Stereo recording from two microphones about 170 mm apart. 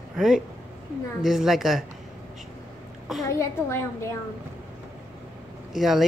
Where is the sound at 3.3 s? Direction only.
15° left (ahead or behind).